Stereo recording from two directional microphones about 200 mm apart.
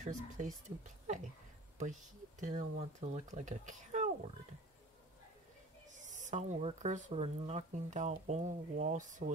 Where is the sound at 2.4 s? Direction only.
40° right (ahead or behind).